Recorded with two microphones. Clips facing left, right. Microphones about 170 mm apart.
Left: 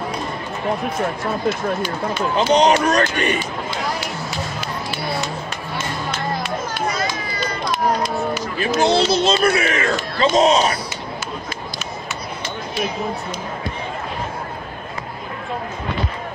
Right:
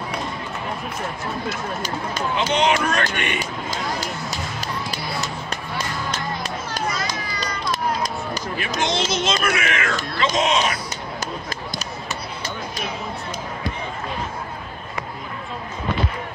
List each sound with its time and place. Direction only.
2.3 s speech: 40° left (ahead or behind)
3.7 s a sound: 40° right (ahead or behind)
5.8 s music: 40° right (ahead or behind)
8.5 s speech: 35° left (ahead or behind)